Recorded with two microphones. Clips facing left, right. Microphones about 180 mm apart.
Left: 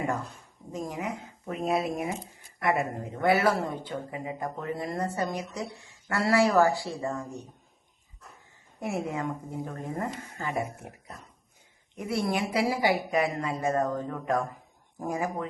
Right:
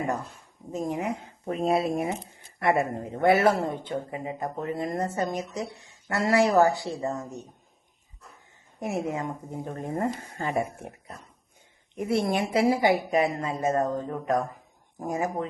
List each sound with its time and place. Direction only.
0.7 s speech: 25° right (ahead or behind)
8.8 s speech: 20° right (ahead or behind)
9.6 s speech: 30° right (ahead or behind)
11.9 s speech: 25° right (ahead or behind)